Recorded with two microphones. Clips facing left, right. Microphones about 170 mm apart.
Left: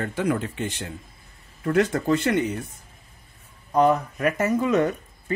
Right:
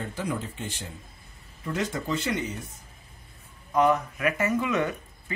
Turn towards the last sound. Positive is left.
turn(degrees=40)  # may be behind; listen again after turning